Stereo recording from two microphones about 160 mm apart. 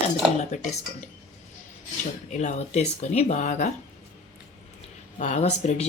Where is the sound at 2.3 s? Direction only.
50° left (ahead or behind).